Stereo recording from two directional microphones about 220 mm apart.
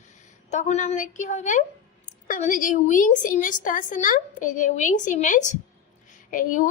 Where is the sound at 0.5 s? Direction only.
30° left (ahead or behind).